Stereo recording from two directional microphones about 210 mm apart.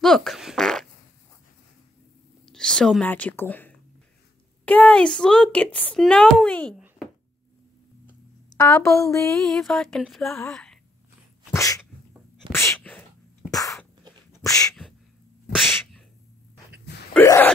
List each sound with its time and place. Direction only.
0.0 s fart: centre (ahead or behind)
2.4 s a woman's voice: 5° left (ahead or behind)
8.5 s a woman's voice: 15° left (ahead or behind)
9.4 s a woman's voice: centre (ahead or behind)
10.5 s a sound: 5° left (ahead or behind)
11.5 s dog: 15° left (ahead or behind)
12.4 s sneeze: 10° left (ahead or behind)
14.4 s a sound: 15° left (ahead or behind)
15.5 s sneeze: centre (ahead or behind)
17.1 s gasp: 10° left (ahead or behind)